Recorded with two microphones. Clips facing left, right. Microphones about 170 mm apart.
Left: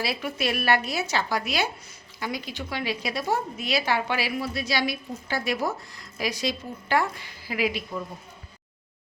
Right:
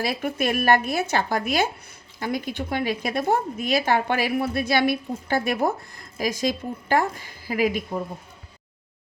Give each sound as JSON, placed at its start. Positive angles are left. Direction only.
{"t": 0.0, "sound": "a woman's voice", "side_deg": -50}